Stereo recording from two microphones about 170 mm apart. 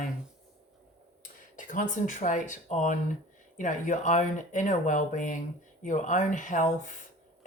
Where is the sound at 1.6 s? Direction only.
50° left (ahead or behind).